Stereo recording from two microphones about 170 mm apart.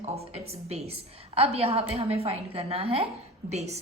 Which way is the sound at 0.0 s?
35° right (ahead or behind).